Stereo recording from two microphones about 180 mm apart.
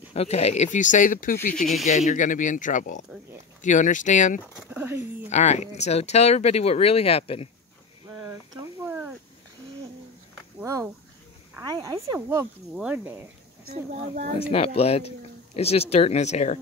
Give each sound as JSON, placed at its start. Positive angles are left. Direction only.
{"t": 0.1, "sound": "speech", "side_deg": 35}
{"t": 1.5, "sound": "speech", "side_deg": 0}
{"t": 1.9, "sound": "speech", "side_deg": 40}
{"t": 4.6, "sound": "a sound", "side_deg": -10}
{"t": 5.3, "sound": "speech", "side_deg": 40}
{"t": 8.1, "sound": "a sound", "side_deg": -15}
{"t": 10.6, "sound": "speech", "side_deg": -15}
{"t": 13.7, "sound": "speech", "side_deg": -45}
{"t": 14.5, "sound": "speech", "side_deg": 35}